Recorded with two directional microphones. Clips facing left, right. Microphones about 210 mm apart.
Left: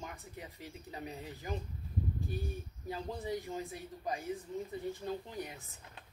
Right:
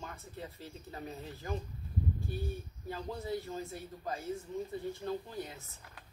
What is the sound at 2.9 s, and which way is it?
Speech, 15° left (ahead or behind).